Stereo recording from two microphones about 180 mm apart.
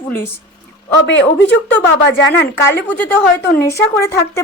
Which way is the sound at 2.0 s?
75° left (ahead or behind).